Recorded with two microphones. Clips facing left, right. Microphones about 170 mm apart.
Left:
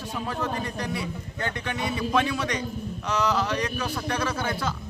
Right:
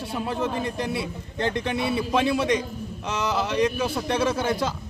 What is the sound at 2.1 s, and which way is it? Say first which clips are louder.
Speech: right 4 dB; 25° right (ahead or behind).